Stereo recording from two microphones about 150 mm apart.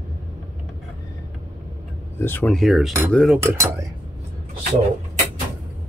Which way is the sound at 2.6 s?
Centre (ahead or behind).